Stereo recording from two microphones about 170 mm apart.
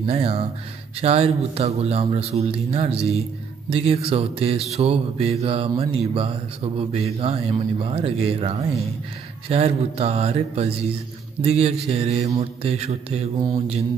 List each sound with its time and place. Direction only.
0.0 s mantra: 35° right (ahead or behind)